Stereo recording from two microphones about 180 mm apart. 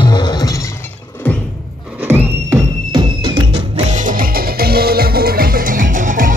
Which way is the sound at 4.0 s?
55° right (ahead or behind).